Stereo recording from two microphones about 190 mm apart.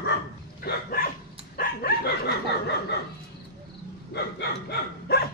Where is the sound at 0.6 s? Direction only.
50° left (ahead or behind).